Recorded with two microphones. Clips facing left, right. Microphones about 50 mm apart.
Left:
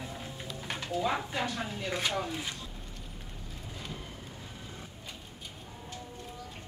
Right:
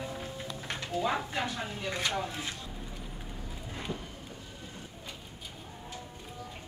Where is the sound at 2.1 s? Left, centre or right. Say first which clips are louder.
Left 1 dB; centre.